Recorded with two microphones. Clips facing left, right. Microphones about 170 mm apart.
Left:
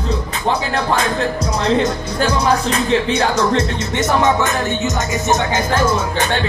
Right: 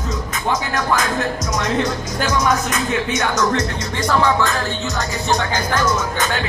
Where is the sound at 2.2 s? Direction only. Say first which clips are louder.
Left 3 dB; 30° left (ahead or behind).